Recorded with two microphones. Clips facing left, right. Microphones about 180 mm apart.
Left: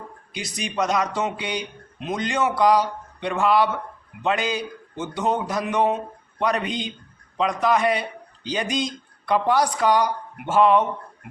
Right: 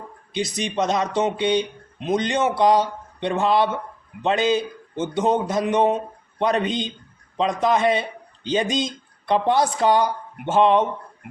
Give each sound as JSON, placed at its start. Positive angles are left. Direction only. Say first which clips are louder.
{"t": 0.3, "sound": "speech", "louder": "right 3 dB", "side_deg": -25}